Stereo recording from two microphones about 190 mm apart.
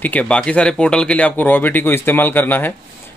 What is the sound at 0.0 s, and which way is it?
Speech, 10° left (ahead or behind).